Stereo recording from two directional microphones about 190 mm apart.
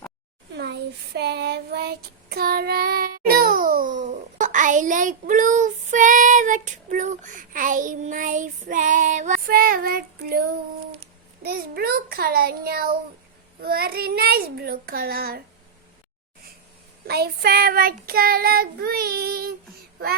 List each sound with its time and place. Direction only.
0.5 s child singing: 65° right (ahead or behind)
11.4 s child singing: 55° right (ahead or behind)
17.1 s child singing: 55° right (ahead or behind)